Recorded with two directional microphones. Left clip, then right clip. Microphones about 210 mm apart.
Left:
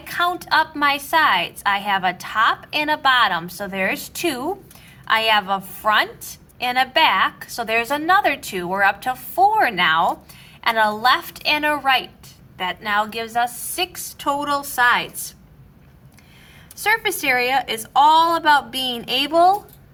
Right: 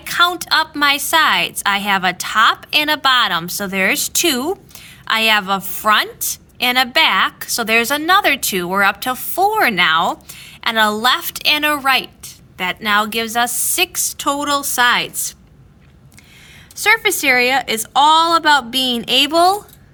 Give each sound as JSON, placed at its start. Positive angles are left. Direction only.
{"t": 0.0, "sound": "a woman's voice", "side_deg": -50}
{"t": 16.8, "sound": "a woman's voice", "side_deg": -40}